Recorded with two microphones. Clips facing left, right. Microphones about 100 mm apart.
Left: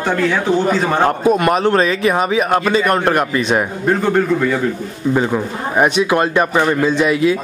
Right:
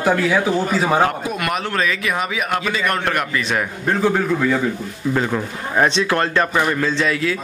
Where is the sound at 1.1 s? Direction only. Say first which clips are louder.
Left 9 dB; 30° left (ahead or behind).